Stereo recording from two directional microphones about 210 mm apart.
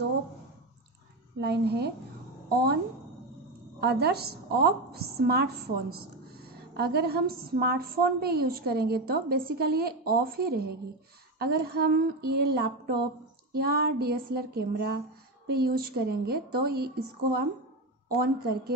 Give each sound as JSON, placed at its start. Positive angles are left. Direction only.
{"t": 1.4, "sound": "a woman's voice", "side_deg": -50}
{"t": 3.8, "sound": "a woman's voice", "side_deg": -50}